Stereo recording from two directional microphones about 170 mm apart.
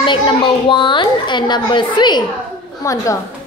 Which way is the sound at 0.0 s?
30° left (ahead or behind).